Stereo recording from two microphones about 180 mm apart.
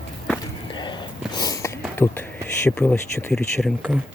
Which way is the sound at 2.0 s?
10° left (ahead or behind).